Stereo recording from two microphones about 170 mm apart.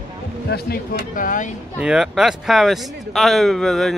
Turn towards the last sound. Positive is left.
turn(degrees=0)  # may be behind; listen again after turning